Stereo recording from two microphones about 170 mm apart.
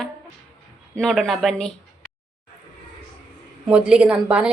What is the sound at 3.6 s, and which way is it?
Speech, 5° right (ahead or behind).